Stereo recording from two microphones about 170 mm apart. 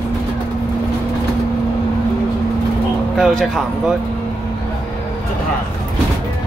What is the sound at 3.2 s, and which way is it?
Speech, centre (ahead or behind).